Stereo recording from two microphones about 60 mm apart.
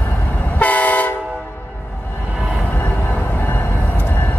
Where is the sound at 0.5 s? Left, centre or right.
Left.